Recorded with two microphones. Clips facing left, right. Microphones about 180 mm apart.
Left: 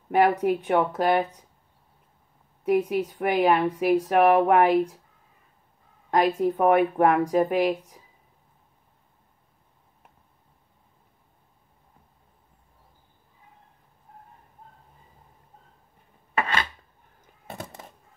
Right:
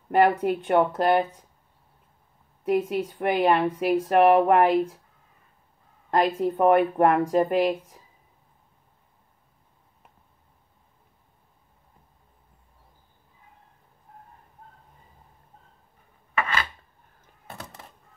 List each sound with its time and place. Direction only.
0.1 s speech: centre (ahead or behind)
2.6 s speech: centre (ahead or behind)
6.0 s speech: centre (ahead or behind)
16.3 s filing: 35° left (ahead or behind)